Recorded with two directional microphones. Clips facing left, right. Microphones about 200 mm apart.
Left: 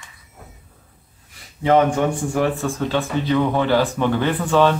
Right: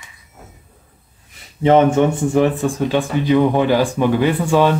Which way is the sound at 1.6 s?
25° right (ahead or behind).